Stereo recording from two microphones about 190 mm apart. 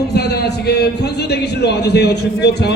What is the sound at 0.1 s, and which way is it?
A man's voice, 60° left (ahead or behind).